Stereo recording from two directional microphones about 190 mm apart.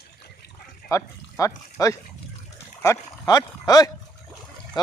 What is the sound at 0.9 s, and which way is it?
Speech, 15° left (ahead or behind).